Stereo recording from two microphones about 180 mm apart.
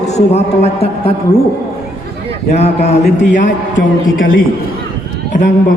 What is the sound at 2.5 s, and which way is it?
A man's voice, 35° left (ahead or behind).